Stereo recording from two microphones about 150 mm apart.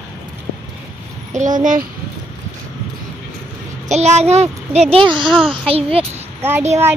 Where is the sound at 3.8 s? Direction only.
50° right (ahead or behind).